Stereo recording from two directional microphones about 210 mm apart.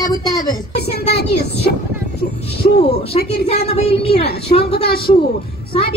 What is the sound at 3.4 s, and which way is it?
A woman's voice, 30° left (ahead or behind).